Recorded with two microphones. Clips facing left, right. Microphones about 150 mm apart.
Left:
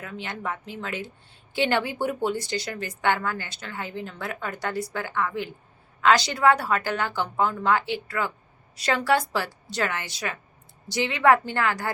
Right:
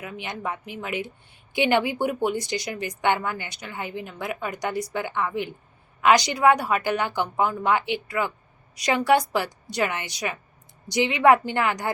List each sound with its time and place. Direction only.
0.0 s a woman's voice: 15° right (ahead or behind)